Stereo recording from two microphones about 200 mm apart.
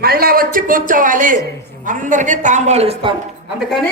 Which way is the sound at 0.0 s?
50° right (ahead or behind).